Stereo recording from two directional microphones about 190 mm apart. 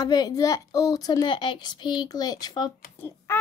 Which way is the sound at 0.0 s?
20° left (ahead or behind).